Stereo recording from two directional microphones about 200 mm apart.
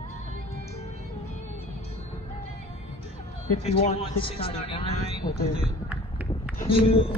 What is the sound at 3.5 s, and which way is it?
Speech, 30° left (ahead or behind).